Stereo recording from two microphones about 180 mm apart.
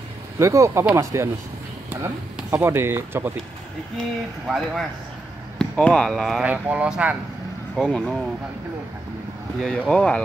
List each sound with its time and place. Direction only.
0.4 s speech: 15° right (ahead or behind)
2.5 s speech: 15° right (ahead or behind)
4.5 s speech: centre (ahead or behind)
9.6 s speech: 5° left (ahead or behind)